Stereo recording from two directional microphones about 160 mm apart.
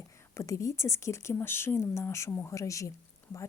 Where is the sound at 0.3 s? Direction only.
20° left (ahead or behind).